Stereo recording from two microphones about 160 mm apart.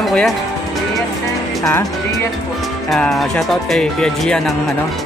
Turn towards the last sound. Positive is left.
turn(degrees=5)  # may be behind; listen again after turning